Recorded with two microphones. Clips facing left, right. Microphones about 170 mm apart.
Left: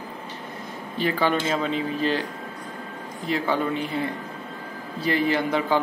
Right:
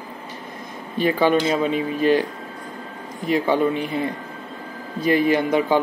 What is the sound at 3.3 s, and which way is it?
Speech, 15° right (ahead or behind).